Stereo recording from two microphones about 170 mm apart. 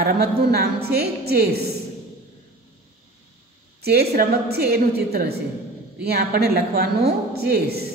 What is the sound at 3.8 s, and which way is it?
Speech, 65° right (ahead or behind).